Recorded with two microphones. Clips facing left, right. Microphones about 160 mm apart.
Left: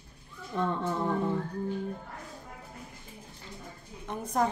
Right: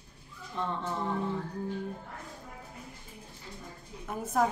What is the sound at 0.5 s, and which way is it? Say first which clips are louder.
Speech: left 4 dB; 55° left (ahead or behind).